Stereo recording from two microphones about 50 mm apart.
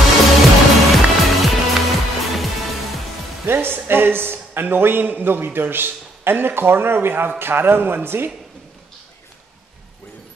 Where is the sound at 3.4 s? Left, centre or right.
Right.